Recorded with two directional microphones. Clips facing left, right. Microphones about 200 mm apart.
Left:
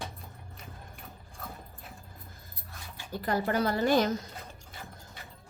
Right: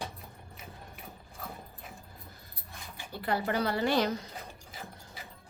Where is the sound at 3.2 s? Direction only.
45° left (ahead or behind).